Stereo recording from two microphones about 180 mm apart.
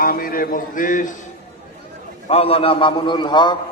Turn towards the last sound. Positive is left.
turn(degrees=25)  # may be behind; listen again after turning